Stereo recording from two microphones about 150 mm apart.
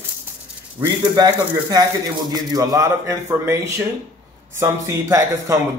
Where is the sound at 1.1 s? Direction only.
25° right (ahead or behind).